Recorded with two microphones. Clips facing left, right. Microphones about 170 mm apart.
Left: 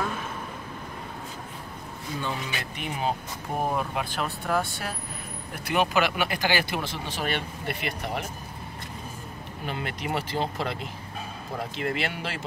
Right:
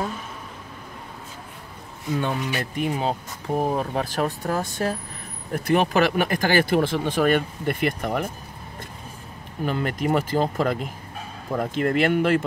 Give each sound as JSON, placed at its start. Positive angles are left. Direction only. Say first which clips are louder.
{"t": 2.1, "sound": "speech", "louder": "right 7 dB", "side_deg": -50}
{"t": 9.7, "sound": "speech", "louder": "right 8 dB", "side_deg": -45}